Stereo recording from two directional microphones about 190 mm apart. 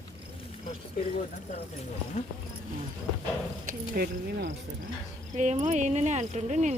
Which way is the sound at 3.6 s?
50° right (ahead or behind).